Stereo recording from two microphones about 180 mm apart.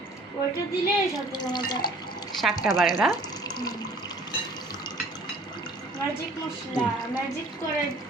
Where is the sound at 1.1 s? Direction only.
25° left (ahead or behind).